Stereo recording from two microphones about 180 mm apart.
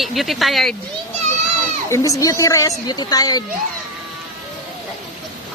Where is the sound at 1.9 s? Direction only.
15° left (ahead or behind).